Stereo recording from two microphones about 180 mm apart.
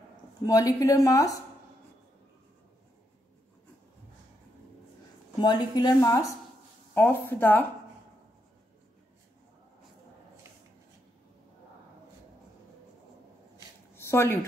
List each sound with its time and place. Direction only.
0.5 s a woman's voice: 20° left (ahead or behind)
5.4 s a woman's voice: 25° left (ahead or behind)
13.9 s a sound: 15° left (ahead or behind)